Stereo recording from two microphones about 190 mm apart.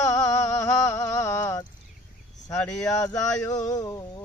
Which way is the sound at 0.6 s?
15° left (ahead or behind).